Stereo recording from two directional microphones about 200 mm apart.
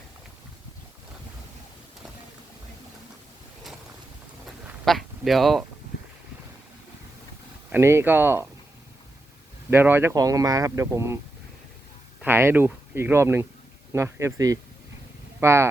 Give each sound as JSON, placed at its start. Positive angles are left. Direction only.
{"t": 4.4, "sound": "a sound", "side_deg": 0}
{"t": 7.7, "sound": "speech", "side_deg": -10}
{"t": 9.6, "sound": "speech", "side_deg": -10}
{"t": 12.2, "sound": "speech", "side_deg": -10}